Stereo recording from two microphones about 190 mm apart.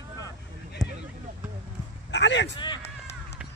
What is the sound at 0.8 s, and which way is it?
Boat, 20° left (ahead or behind).